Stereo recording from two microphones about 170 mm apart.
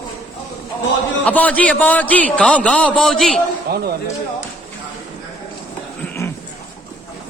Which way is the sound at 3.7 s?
70° right (ahead or behind).